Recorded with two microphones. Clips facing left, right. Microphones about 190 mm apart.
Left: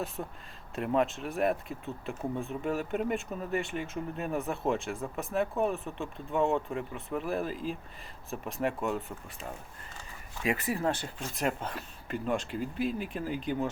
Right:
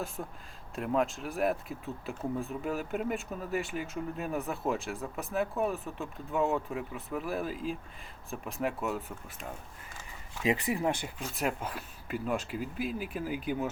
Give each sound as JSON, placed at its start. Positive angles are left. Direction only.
{"t": 0.2, "sound": "speech", "side_deg": 5}
{"t": 10.4, "sound": "speech", "side_deg": -20}
{"t": 11.2, "sound": "speech", "side_deg": 0}